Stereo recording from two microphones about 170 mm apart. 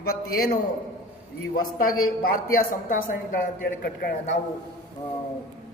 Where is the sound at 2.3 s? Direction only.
55° left (ahead or behind).